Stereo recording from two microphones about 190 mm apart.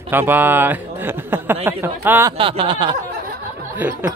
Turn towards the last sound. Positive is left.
turn(degrees=-10)  # may be behind; listen again after turning